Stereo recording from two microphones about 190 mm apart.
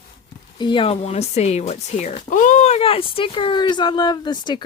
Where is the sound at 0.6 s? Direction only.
25° left (ahead or behind).